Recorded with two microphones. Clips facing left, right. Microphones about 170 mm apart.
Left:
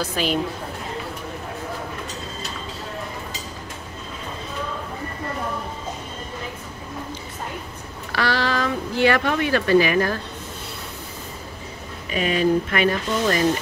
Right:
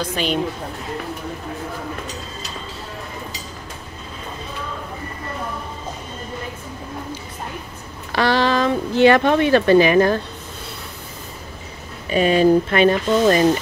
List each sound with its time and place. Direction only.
0.0 s a woman's voice: 5° left (ahead or behind)
8.1 s speech: 20° right (ahead or behind)
12.1 s speech: 30° right (ahead or behind)